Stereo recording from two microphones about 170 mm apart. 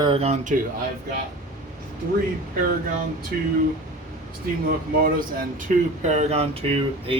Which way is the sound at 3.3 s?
60° right (ahead or behind).